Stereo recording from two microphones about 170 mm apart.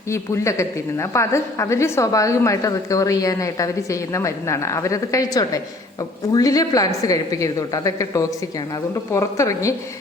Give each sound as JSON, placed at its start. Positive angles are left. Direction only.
{"t": 0.1, "sound": "a woman's voice", "side_deg": 15}